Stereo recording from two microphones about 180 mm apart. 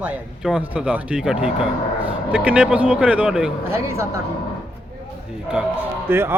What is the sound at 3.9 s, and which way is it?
Speech, 15° right (ahead or behind).